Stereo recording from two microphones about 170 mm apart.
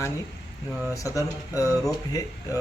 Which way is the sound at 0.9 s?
20° left (ahead or behind).